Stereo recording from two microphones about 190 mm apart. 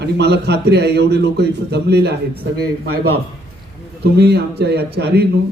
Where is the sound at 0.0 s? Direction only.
60° right (ahead or behind).